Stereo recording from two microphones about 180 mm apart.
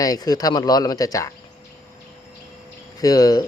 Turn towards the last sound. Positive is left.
turn(degrees=20)  # may be behind; listen again after turning